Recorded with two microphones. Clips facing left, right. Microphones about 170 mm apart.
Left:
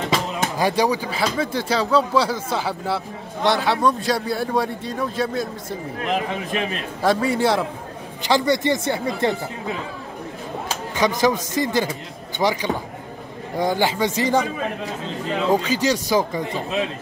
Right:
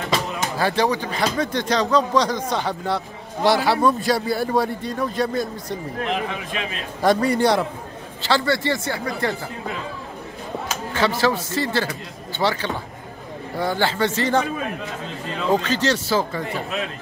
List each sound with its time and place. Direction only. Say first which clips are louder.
0.6 s speech: left 1 dB; 10° left (ahead or behind)
7.0 s speech: right 2 dB; centre (ahead or behind)
8.2 s speech: left 2 dB; 15° left (ahead or behind)
10.9 s speech: left 1 dB; 15° left (ahead or behind)
15.5 s speech: right 1 dB; 10° left (ahead or behind)